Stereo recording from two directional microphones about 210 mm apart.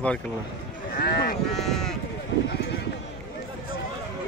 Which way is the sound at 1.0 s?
45° left (ahead or behind).